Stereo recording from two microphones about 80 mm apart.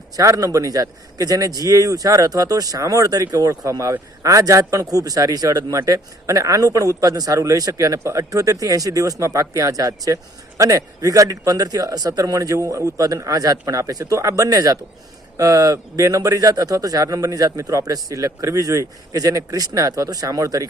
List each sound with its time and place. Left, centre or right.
0.2 s speech: right